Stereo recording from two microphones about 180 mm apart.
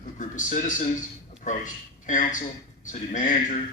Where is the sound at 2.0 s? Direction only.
45° left (ahead or behind).